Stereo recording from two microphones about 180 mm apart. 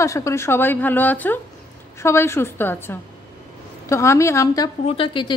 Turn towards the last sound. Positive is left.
turn(degrees=30)  # may be behind; listen again after turning